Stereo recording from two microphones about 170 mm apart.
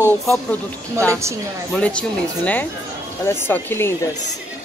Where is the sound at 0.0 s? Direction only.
15° left (ahead or behind).